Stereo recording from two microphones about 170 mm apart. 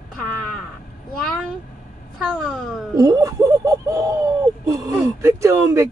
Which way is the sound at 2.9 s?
20° right (ahead or behind).